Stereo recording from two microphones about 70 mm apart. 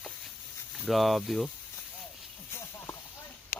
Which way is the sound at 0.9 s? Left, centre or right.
Centre.